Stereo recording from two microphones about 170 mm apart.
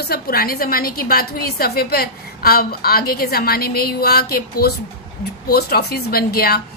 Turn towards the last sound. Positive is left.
turn(degrees=65)  # may be behind; listen again after turning